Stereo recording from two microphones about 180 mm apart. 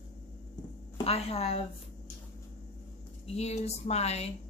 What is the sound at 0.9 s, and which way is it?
Speech, 35° left (ahead or behind).